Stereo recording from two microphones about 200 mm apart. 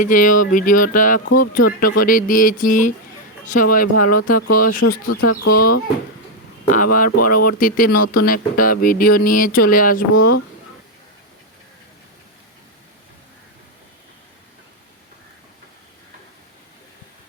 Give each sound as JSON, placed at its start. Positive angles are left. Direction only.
{"t": 0.0, "sound": "speech", "side_deg": 40}
{"t": 6.7, "sound": "speech", "side_deg": 40}